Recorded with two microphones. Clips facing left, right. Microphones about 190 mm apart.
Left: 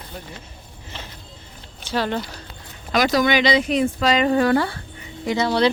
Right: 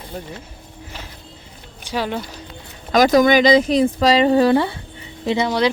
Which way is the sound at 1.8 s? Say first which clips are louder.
Even; 10° right (ahead or behind).